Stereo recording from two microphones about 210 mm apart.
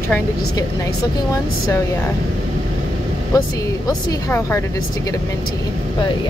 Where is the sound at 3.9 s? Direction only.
15° left (ahead or behind).